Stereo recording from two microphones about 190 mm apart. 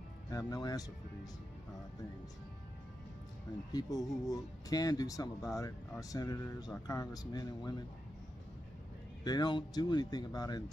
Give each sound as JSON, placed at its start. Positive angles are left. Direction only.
{"t": 0.3, "sound": "speech", "side_deg": 20}
{"t": 3.7, "sound": "speech", "side_deg": 20}
{"t": 9.2, "sound": "speech", "side_deg": 20}